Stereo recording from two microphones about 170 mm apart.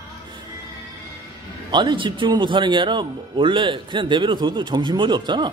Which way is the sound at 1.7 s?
25° right (ahead or behind).